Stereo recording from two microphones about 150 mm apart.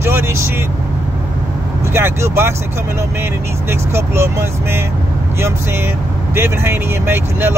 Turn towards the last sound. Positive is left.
turn(degrees=-15)  # may be behind; listen again after turning